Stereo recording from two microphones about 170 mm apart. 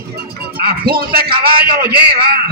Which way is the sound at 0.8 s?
65° right (ahead or behind).